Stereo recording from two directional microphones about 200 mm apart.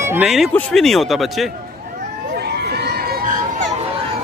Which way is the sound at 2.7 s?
50° right (ahead or behind).